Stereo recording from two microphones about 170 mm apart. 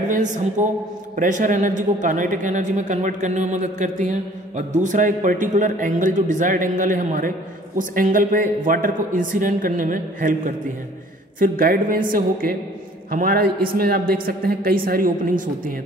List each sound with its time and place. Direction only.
0.1 s a man's voice: 45° right (ahead or behind)